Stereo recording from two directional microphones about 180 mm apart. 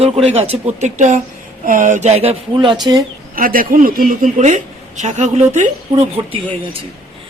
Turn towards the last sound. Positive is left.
turn(degrees=-20)  # may be behind; listen again after turning